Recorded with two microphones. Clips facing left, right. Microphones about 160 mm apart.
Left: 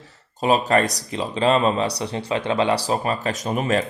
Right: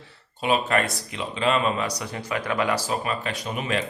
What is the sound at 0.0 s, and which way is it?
Speech, 40° left (ahead or behind).